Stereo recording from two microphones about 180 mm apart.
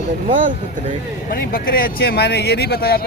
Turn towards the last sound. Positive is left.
turn(degrees=60)  # may be behind; listen again after turning